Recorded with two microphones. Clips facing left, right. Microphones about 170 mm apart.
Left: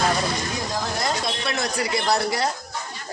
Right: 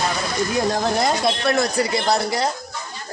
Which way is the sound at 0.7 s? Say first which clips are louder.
Right 6 dB; 65° right (ahead or behind).